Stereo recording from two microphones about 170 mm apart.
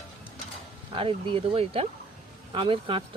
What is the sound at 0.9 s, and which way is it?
Speech, 30° right (ahead or behind).